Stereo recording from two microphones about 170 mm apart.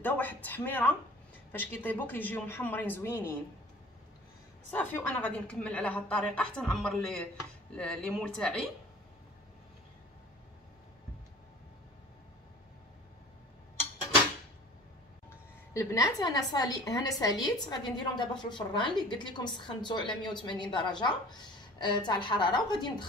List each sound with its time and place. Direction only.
0.0 s a woman's voice: 10° left (ahead or behind)
4.6 s a woman's voice: 10° left (ahead or behind)
15.2 s a woman's voice: 15° left (ahead or behind)